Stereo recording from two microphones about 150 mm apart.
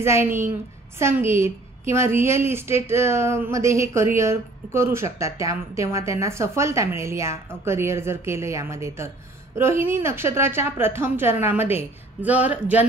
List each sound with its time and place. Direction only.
0.0 s a woman's voice: 15° right (ahead or behind)